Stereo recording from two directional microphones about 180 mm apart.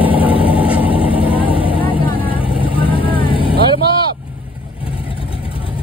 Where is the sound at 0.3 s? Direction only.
30° left (ahead or behind).